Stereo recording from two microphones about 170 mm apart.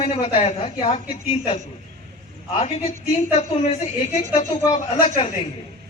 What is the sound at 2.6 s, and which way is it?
A woman's voice, 40° left (ahead or behind).